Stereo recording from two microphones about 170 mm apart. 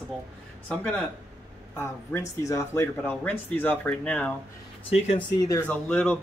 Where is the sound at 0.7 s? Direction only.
5° left (ahead or behind).